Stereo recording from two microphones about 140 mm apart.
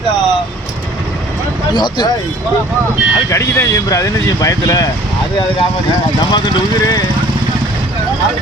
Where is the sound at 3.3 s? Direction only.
20° left (ahead or behind).